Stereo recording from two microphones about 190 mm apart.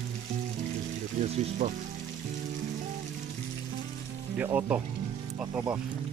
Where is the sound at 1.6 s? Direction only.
35° right (ahead or behind).